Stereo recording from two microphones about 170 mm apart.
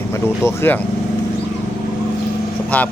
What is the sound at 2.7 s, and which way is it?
Speech, 10° left (ahead or behind).